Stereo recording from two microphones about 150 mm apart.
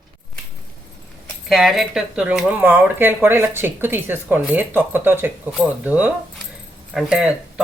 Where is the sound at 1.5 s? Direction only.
Centre (ahead or behind).